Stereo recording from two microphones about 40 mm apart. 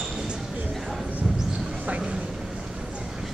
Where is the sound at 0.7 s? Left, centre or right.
Centre.